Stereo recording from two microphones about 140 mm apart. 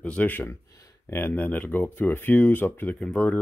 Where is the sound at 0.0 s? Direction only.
10° left (ahead or behind).